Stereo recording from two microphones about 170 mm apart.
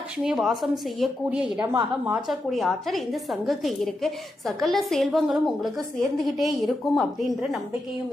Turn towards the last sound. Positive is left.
turn(degrees=0)  # may be behind; listen again after turning